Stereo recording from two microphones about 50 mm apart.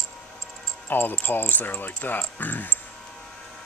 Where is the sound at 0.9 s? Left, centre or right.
Left.